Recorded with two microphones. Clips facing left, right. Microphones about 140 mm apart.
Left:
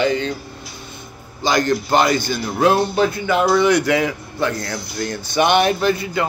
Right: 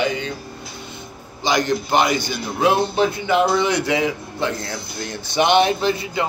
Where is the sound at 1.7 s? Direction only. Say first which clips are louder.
Left 3 dB; 15° right (ahead or behind).